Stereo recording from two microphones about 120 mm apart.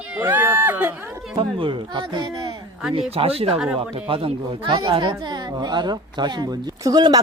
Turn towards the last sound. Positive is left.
turn(degrees=-35)  # may be behind; listen again after turning